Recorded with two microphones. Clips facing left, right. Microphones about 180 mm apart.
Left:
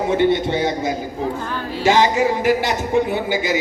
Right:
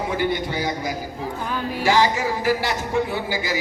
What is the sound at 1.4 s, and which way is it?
Speech, 10° right (ahead or behind).